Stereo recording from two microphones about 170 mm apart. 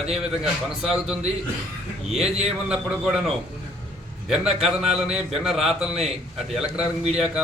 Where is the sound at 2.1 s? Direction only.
40° right (ahead or behind).